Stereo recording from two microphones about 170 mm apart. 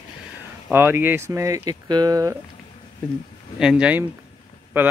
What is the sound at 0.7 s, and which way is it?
Speech, 10° right (ahead or behind).